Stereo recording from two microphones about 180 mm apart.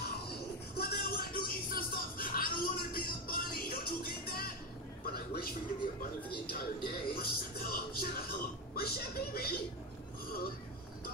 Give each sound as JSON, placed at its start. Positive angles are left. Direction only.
{"t": 0.7, "sound": "music", "side_deg": 60}
{"t": 5.1, "sound": "a sound", "side_deg": 55}
{"t": 6.4, "sound": "music", "side_deg": 55}